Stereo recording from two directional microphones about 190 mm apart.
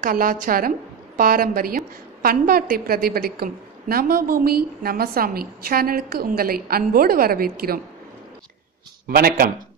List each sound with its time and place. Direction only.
0.0 s a woman's voice: 45° right (ahead or behind)
9.0 s a woman's voice: 50° right (ahead or behind)